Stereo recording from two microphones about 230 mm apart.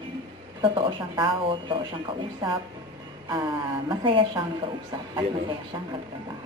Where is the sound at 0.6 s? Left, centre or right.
Right.